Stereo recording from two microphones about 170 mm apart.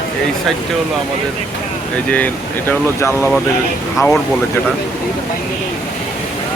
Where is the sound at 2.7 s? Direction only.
15° left (ahead or behind).